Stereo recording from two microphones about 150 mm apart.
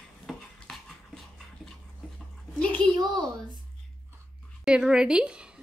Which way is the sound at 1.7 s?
5° left (ahead or behind).